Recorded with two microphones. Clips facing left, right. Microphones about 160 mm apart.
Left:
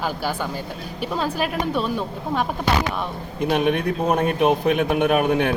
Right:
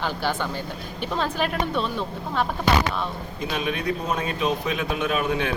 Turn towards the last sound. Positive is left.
turn(degrees=60)  # may be behind; listen again after turning